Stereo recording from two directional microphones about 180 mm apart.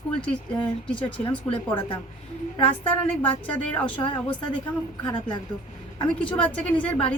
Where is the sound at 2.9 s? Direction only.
10° left (ahead or behind).